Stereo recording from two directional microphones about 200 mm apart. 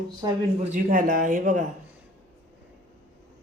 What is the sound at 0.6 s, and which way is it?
A man's voice, 40° right (ahead or behind).